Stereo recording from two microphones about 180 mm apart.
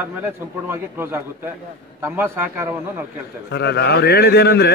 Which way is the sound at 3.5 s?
65° left (ahead or behind).